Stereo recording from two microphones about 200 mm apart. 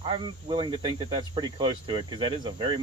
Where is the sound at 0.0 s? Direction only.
25° right (ahead or behind).